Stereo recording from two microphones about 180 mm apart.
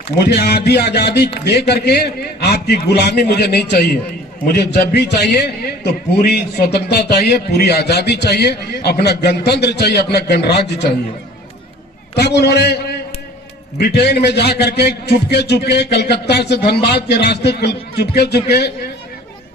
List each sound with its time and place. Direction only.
0.2 s a man's voice: 60° left (ahead or behind)
12.1 s a man's voice: 65° left (ahead or behind)